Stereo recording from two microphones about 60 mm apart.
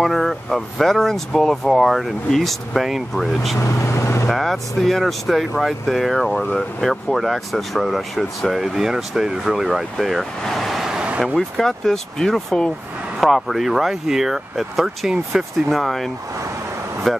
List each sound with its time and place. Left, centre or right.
0.0 s speech: centre
3.5 s speech: left
4.3 s speech: centre
11.3 s speech: centre